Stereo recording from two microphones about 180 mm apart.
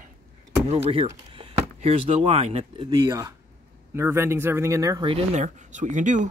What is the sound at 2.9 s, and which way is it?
Speech, 20° right (ahead or behind).